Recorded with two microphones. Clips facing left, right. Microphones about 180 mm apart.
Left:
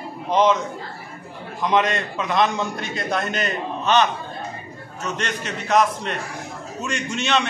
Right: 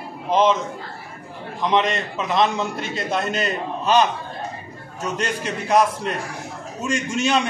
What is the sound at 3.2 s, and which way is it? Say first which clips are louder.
Speech: right 2 dB; 30° right (ahead or behind).